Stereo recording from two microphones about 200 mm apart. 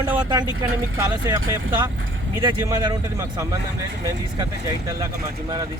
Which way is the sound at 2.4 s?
15° right (ahead or behind).